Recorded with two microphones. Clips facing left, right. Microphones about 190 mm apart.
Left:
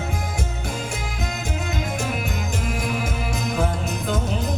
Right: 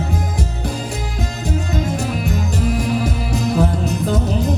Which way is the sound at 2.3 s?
35° right (ahead or behind).